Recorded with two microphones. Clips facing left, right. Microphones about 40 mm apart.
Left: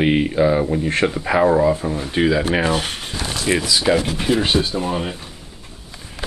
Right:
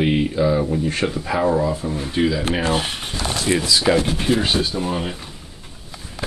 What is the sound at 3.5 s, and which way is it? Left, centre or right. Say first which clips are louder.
Speech: left 1 dB; left.